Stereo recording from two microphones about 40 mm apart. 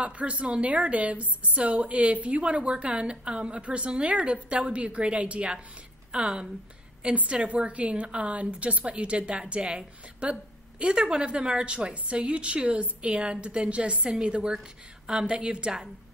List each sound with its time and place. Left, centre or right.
0.0 s a woman's voice: right
6.1 s a woman's voice: centre
14.5 s a woman's voice: centre